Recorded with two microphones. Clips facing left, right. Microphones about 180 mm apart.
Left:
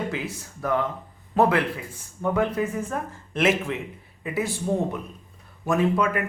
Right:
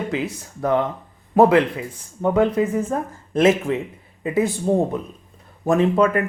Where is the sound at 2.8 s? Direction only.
35° right (ahead or behind).